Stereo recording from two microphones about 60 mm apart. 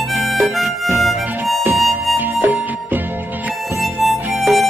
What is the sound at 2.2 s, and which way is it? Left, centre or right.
Music, right.